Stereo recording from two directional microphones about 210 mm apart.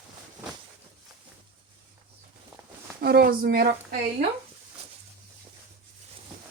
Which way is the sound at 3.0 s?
50° right (ahead or behind).